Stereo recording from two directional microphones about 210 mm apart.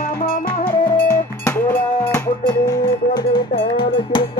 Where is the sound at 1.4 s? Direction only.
10° left (ahead or behind).